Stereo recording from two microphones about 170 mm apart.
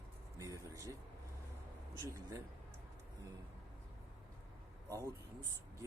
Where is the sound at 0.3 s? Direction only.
20° right (ahead or behind).